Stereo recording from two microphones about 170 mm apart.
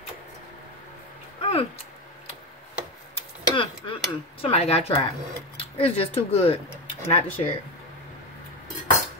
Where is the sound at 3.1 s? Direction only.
30° left (ahead or behind).